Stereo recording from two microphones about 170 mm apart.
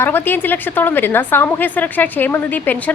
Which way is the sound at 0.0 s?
10° left (ahead or behind).